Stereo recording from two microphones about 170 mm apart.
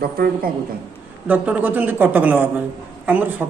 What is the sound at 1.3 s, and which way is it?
A man's voice, 10° right (ahead or behind).